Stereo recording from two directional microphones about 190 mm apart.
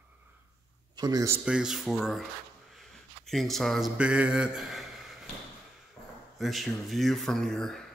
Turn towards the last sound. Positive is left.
turn(degrees=5)  # may be behind; listen again after turning